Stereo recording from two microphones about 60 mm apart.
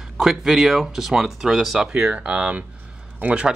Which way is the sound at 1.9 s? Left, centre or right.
Right.